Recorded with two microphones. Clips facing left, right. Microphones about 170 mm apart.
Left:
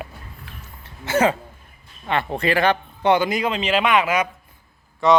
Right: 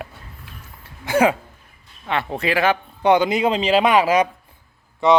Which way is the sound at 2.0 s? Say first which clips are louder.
Left 1 dB; centre (ahead or behind).